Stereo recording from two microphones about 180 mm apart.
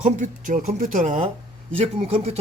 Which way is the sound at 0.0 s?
45° right (ahead or behind).